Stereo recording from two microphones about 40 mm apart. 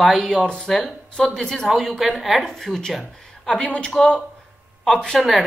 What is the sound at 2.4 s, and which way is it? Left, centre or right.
Speech, centre.